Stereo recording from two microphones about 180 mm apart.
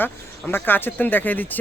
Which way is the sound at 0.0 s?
10° left (ahead or behind).